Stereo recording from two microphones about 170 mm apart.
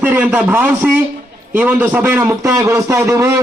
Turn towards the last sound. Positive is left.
turn(degrees=-15)  # may be behind; listen again after turning